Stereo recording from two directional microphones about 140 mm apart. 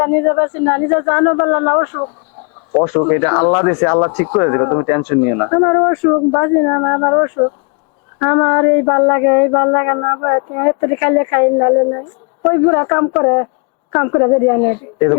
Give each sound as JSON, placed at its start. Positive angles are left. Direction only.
{"t": 0.0, "sound": "speech", "side_deg": 25}